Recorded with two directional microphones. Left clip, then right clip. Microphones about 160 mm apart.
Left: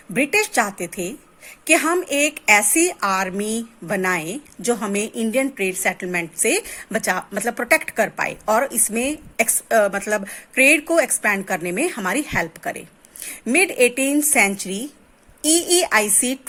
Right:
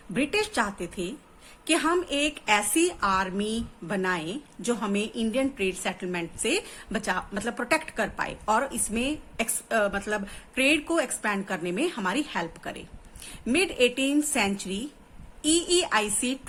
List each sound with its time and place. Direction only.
0.1 s a woman's voice: 40° left (ahead or behind)